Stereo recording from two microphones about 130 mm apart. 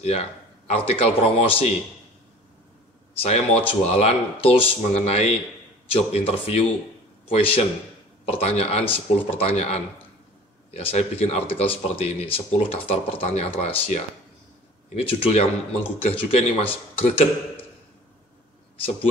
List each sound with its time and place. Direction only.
0.0 s a man's voice: 50° left (ahead or behind)
3.2 s speech: 50° left (ahead or behind)